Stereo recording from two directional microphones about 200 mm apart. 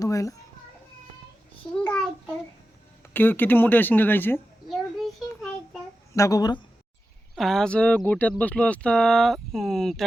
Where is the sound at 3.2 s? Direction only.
10° left (ahead or behind).